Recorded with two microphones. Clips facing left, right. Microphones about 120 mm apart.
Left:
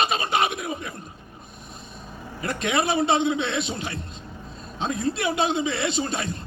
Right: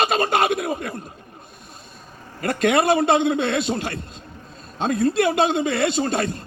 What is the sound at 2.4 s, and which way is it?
Speech, 50° right (ahead or behind).